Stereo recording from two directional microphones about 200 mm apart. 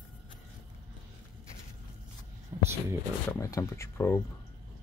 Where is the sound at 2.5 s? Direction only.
20° right (ahead or behind).